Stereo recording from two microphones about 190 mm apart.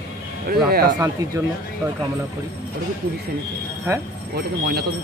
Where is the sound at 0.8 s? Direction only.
15° right (ahead or behind).